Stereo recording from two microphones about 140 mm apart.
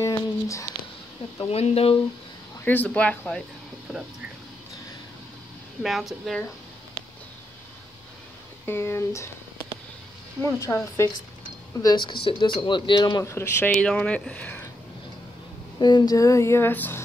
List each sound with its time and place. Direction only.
0.0 s a sound: 20° left (ahead or behind)
1.4 s speech: 45° left (ahead or behind)
2.6 s speech: 10° left (ahead or behind)
5.8 s speech: centre (ahead or behind)
8.6 s speech: 20° left (ahead or behind)
10.4 s a sound: 20° left (ahead or behind)
11.8 s speech: 30° left (ahead or behind)
13.2 s speech: 20° left (ahead or behind)
15.8 s a sound: 30° left (ahead or behind); by 17.0 s 15° left (ahead or behind)